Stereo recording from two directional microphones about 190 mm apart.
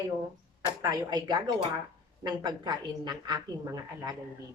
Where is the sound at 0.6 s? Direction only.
20° right (ahead or behind).